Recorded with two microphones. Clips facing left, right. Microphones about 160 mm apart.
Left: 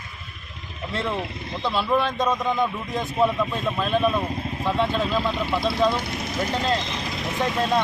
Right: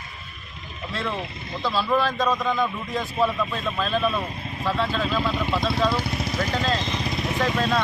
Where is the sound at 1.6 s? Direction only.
20° left (ahead or behind).